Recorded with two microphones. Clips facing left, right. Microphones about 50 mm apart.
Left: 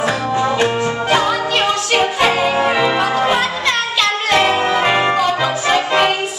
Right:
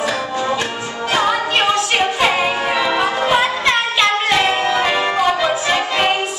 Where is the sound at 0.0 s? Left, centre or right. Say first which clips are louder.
Left 3 dB; left.